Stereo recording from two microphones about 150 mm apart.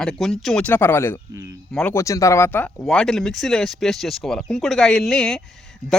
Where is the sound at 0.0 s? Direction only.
5° left (ahead or behind).